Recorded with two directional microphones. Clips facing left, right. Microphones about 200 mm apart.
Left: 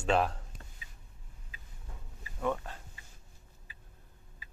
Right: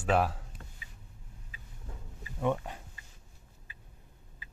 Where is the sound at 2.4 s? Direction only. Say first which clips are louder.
Right 3 dB; 15° right (ahead or behind).